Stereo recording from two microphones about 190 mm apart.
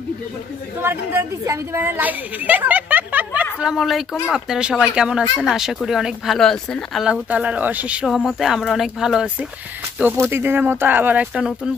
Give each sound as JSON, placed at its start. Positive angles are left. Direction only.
{"t": 0.8, "sound": "speech", "side_deg": -15}